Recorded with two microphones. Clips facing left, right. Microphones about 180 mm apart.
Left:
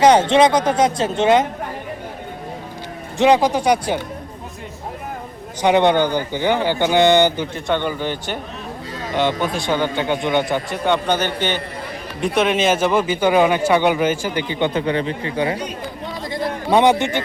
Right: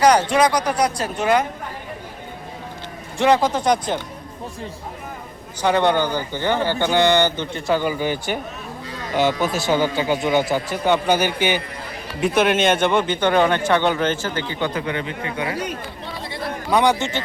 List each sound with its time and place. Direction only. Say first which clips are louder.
0.0 s speech: left 3 dB; 25° left (ahead or behind)
3.2 s speech: left 3 dB; 15° left (ahead or behind)
5.6 s speech: left 3 dB; 20° left (ahead or behind)
7.5 s a man's voice: even; 5° right (ahead or behind); by 15.5 s 30° left (ahead or behind)
16.6 s speech: left 3 dB; 25° left (ahead or behind)